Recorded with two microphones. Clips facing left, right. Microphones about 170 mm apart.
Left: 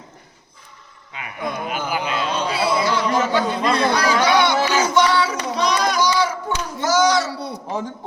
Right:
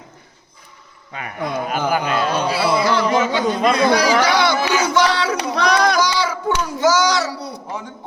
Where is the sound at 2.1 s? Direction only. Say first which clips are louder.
Right 4 dB; 60° right (ahead or behind).